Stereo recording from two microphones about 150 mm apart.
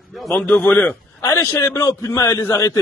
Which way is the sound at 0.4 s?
10° left (ahead or behind).